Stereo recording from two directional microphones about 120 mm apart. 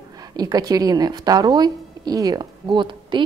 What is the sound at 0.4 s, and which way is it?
A woman's voice, 35° right (ahead or behind).